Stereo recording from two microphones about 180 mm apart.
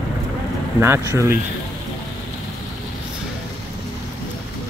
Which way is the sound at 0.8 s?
15° right (ahead or behind).